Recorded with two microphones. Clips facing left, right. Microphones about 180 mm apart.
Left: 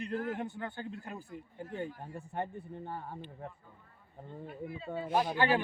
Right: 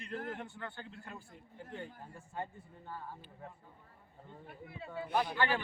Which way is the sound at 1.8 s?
60° left (ahead or behind).